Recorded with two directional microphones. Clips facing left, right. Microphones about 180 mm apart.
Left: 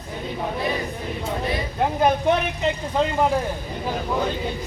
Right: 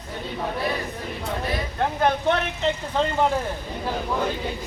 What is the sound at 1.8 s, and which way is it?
A man's voice, 10° left (ahead or behind).